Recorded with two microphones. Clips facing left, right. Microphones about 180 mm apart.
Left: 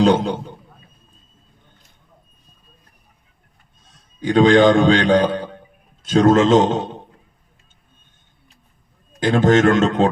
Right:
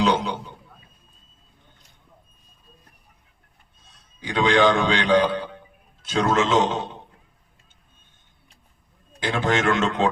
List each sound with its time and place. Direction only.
0.0 s a man's voice: 45° left (ahead or behind)
4.2 s a man's voice: 45° left (ahead or behind)
9.2 s a man's voice: 45° left (ahead or behind)